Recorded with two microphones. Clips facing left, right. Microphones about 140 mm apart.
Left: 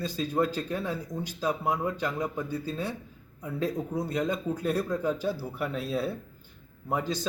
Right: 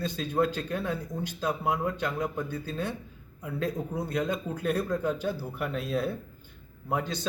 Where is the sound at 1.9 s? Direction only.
5° left (ahead or behind).